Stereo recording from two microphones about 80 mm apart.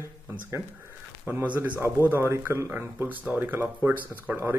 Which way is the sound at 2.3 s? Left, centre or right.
Right.